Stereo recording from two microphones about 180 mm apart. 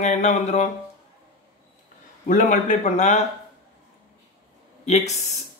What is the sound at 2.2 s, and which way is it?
Speech, 45° left (ahead or behind).